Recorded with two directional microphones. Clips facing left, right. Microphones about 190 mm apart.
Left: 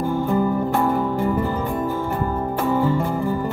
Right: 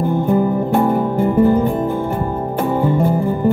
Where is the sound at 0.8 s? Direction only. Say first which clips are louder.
Right 4 dB; 20° right (ahead or behind).